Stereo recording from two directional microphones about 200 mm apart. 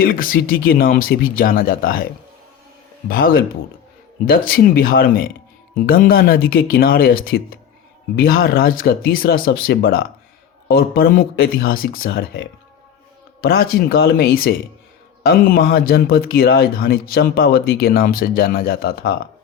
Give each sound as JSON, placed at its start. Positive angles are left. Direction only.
{"t": 0.0, "sound": "speech", "side_deg": 45}
{"t": 3.1, "sound": "speech", "side_deg": 45}